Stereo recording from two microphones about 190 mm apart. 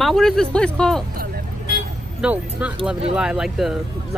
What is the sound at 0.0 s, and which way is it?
Speech, centre (ahead or behind).